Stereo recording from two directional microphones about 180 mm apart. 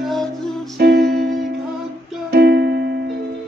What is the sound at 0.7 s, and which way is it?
Music, 65° right (ahead or behind).